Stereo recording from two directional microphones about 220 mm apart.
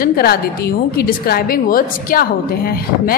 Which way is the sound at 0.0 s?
45° left (ahead or behind).